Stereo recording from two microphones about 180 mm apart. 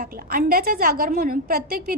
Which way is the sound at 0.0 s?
55° right (ahead or behind).